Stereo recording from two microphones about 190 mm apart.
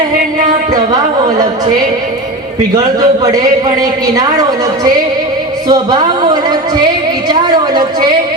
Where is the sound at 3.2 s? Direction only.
20° right (ahead or behind).